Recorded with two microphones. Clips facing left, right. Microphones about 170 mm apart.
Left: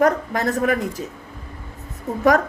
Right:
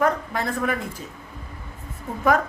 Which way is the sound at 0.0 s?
40° left (ahead or behind).